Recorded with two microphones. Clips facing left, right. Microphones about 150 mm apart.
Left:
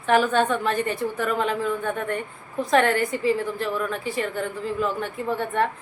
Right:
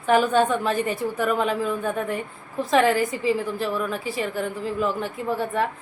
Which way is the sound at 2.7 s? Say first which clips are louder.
Right 1 dB; 5° right (ahead or behind).